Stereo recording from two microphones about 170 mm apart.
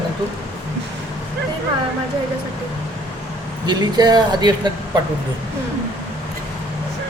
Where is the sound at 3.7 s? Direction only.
25° right (ahead or behind).